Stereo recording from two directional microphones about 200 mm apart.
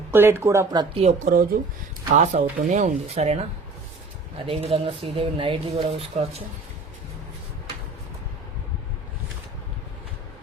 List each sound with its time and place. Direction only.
0.1 s speech: 10° right (ahead or behind)
1.0 s speech: 40° right (ahead or behind)
4.4 s speech: 30° right (ahead or behind)